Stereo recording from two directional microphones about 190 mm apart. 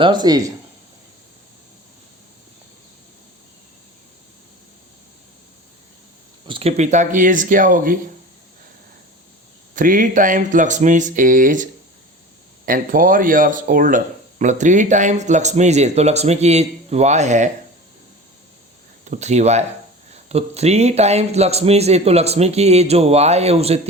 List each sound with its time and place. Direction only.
0.0 s speech: 20° right (ahead or behind)
6.5 s speech: 30° right (ahead or behind)
9.7 s speech: 45° right (ahead or behind)
19.0 s speech: 35° right (ahead or behind)